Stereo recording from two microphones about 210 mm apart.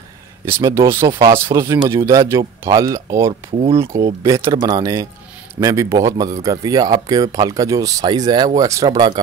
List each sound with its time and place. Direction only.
0.5 s speech: 15° right (ahead or behind)